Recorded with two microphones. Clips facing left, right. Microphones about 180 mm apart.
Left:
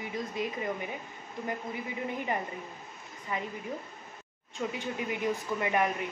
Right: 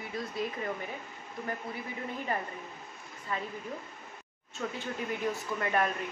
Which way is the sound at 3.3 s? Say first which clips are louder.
Left 1 dB; 15° left (ahead or behind).